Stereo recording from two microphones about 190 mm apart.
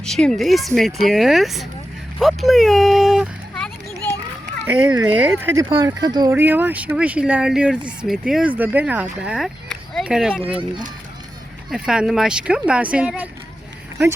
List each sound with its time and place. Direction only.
0.0 s speech: 5° left (ahead or behind)
2.1 s a sound: centre (ahead or behind)
4.6 s speech: 5° right (ahead or behind)
6.3 s speech: 10° right (ahead or behind)
11.7 s speech: 5° right (ahead or behind)